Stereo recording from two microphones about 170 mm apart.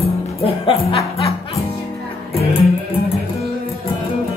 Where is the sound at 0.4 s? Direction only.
35° left (ahead or behind).